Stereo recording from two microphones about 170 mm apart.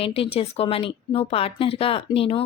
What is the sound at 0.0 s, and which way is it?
A woman's voice, 35° left (ahead or behind).